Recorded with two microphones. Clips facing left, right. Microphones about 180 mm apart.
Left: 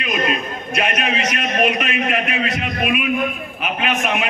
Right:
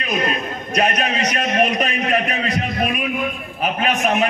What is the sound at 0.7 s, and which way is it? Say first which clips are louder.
A man's voice: right 2 dB; 40° right (ahead or behind).